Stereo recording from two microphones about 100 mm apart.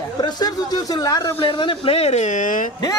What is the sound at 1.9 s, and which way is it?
Speech, 90° left.